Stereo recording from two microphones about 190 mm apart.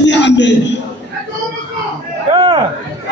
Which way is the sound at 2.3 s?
25° right (ahead or behind).